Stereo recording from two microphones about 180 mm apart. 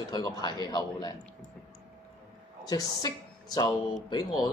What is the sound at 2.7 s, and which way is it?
A man's voice, 20° left (ahead or behind).